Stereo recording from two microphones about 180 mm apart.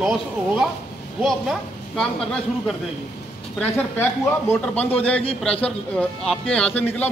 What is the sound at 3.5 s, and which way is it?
A man's voice, 10° left (ahead or behind).